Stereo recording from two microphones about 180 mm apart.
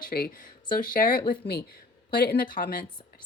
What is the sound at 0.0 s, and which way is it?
Speech, 55° left (ahead or behind).